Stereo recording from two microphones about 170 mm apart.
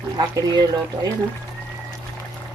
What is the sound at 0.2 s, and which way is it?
Speech, 25° right (ahead or behind).